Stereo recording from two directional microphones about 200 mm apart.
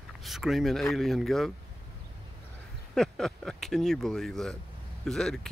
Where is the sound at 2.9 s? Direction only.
Centre (ahead or behind).